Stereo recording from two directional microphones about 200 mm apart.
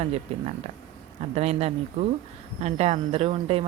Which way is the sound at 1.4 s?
30° right (ahead or behind).